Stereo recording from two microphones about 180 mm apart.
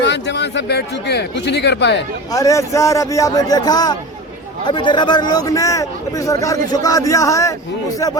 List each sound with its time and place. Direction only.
0.0 s speech: 75° left (ahead or behind)
2.3 s a man's voice: 20° left (ahead or behind)